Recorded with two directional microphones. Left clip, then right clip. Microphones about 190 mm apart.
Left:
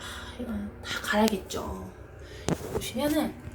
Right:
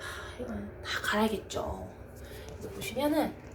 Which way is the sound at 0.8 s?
5° left (ahead or behind).